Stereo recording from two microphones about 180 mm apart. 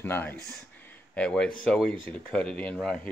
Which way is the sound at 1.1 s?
5° left (ahead or behind).